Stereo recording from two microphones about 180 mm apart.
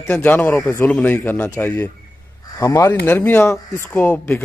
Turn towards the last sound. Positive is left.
turn(degrees=10)  # may be behind; listen again after turning